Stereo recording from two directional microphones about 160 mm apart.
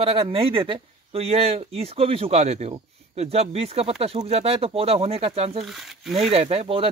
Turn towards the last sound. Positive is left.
turn(degrees=-35)  # may be behind; listen again after turning